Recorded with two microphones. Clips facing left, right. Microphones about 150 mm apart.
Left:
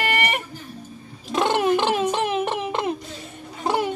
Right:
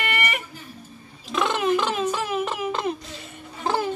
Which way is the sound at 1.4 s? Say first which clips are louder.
Left 3 dB; 70° left (ahead or behind).